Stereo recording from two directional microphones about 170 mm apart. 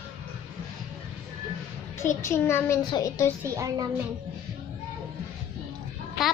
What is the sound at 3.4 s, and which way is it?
Speech, 20° right (ahead or behind).